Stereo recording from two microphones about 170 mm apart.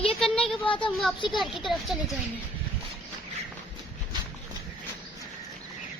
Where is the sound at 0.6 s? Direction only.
30° left (ahead or behind).